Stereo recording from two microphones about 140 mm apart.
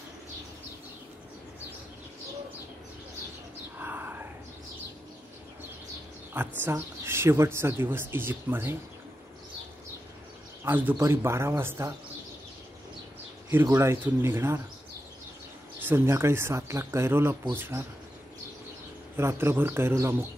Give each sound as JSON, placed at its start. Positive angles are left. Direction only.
{"t": 3.7, "sound": "a sound", "side_deg": -15}
{"t": 6.6, "sound": "speech", "side_deg": -15}
{"t": 10.6, "sound": "speech", "side_deg": -15}
{"t": 13.7, "sound": "speech", "side_deg": -20}
{"t": 15.8, "sound": "speech", "side_deg": -15}
{"t": 19.1, "sound": "speech", "side_deg": -20}